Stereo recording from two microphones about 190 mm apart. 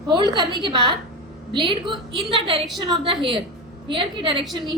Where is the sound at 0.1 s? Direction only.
25° right (ahead or behind).